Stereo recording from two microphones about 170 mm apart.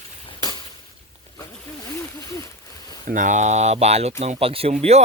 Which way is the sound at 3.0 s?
50° right (ahead or behind).